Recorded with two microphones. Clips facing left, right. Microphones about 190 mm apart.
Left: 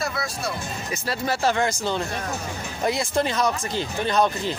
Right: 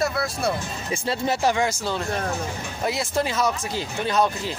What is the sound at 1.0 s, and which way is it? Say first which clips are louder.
Speech: right 1 dB; 20° right (ahead or behind).